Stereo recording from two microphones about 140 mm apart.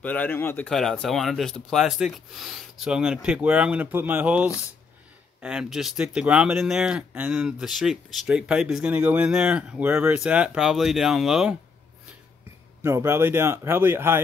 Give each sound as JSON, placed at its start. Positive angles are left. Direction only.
{"t": 0.0, "sound": "speech", "side_deg": 10}
{"t": 0.7, "sound": "speech", "side_deg": 5}
{"t": 12.8, "sound": "speech", "side_deg": -20}